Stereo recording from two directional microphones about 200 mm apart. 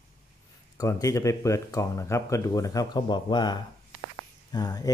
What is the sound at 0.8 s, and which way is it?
Speech, 15° left (ahead or behind).